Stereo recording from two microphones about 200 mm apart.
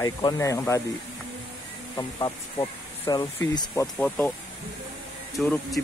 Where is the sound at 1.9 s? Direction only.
20° left (ahead or behind).